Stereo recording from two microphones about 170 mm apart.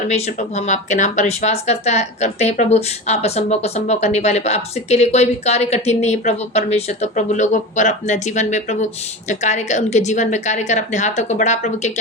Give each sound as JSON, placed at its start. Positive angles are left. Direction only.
{"t": 0.1, "sound": "a woman's voice", "side_deg": 40}